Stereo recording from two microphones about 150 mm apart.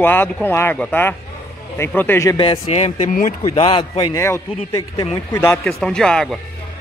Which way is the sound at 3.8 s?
30° left (ahead or behind).